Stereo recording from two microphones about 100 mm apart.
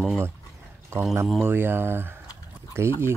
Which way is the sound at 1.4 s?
20° right (ahead or behind).